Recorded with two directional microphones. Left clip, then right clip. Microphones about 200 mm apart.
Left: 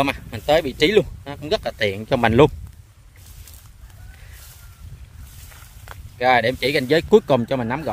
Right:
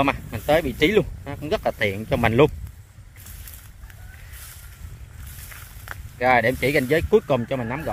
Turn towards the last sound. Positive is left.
turn(degrees=25)  # may be behind; listen again after turning